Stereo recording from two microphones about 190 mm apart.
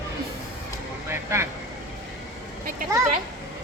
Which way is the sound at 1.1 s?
15° right (ahead or behind).